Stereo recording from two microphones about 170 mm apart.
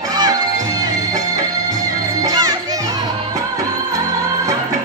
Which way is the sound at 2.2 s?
25° right (ahead or behind).